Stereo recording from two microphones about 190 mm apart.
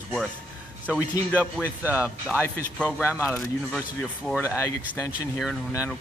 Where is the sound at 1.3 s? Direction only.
10° left (ahead or behind).